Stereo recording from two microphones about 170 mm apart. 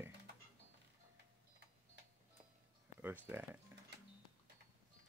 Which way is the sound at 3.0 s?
10° right (ahead or behind).